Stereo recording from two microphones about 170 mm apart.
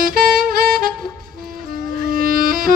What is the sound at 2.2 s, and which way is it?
Music, 55° right (ahead or behind).